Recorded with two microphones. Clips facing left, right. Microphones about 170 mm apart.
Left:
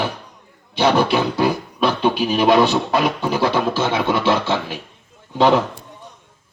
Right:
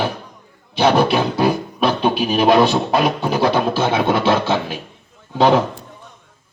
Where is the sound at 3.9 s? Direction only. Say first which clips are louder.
Right 2 dB; 20° right (ahead or behind).